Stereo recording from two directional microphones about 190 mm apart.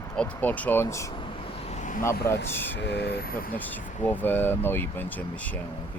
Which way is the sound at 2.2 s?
15° left (ahead or behind).